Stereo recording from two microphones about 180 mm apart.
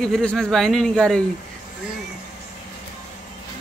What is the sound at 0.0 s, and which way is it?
A man's voice, 5° left (ahead or behind).